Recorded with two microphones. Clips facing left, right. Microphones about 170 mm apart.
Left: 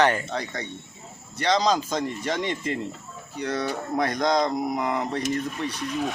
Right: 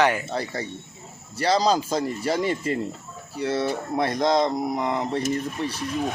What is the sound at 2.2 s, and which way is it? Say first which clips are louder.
Speech: right 3 dB; 35° right (ahead or behind).